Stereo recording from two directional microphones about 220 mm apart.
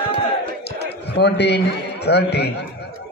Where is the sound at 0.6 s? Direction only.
50° left (ahead or behind).